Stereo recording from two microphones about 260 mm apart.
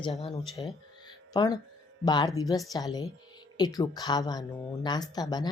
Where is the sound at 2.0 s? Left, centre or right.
Centre.